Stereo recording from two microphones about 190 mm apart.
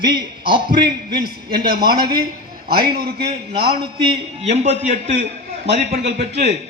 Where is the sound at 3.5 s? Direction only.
55° right (ahead or behind).